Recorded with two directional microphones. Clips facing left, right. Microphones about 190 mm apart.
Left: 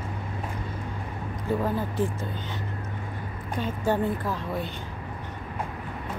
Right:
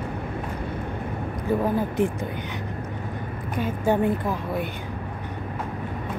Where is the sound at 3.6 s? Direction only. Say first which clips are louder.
Right 3 dB; 15° right (ahead or behind).